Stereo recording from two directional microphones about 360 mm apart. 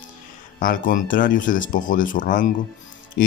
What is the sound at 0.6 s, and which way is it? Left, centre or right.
Speech, left.